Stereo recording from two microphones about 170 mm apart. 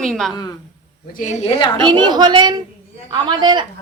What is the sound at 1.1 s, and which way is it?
Speech, 45° left (ahead or behind).